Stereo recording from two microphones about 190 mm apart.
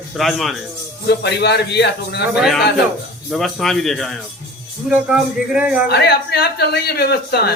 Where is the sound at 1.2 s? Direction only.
60° left (ahead or behind).